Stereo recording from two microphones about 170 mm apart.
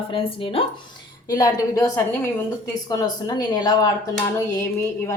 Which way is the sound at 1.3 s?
20° left (ahead or behind).